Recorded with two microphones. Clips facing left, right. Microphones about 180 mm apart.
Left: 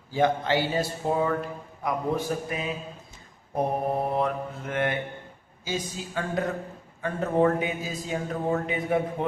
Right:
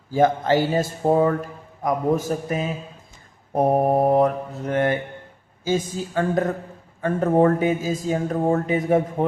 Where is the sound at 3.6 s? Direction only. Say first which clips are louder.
Right 8 dB; 50° right (ahead or behind).